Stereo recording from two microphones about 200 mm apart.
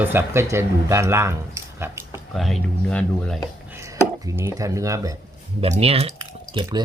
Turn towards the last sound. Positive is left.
turn(degrees=-20)  # may be behind; listen again after turning